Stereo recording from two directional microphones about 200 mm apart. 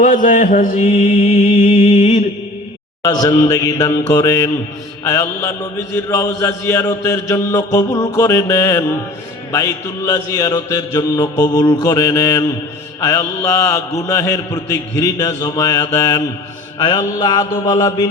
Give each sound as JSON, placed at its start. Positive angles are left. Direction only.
{"t": 0.0, "sound": "mantra", "side_deg": 40}
{"t": 1.5, "sound": "mantra", "side_deg": 25}